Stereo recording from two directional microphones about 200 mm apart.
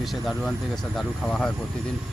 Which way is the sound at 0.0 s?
Centre (ahead or behind).